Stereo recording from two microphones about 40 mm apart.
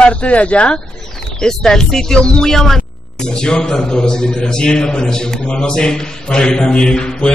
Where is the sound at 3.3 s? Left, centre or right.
Centre.